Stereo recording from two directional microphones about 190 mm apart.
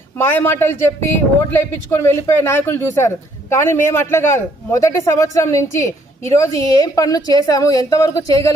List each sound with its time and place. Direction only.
0.2 s a woman's voice: 10° left (ahead or behind)